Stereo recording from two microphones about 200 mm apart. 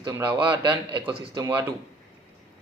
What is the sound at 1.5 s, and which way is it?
Speech, 10° right (ahead or behind).